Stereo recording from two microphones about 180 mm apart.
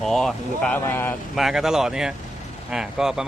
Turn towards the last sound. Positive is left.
turn(degrees=-5)  # may be behind; listen again after turning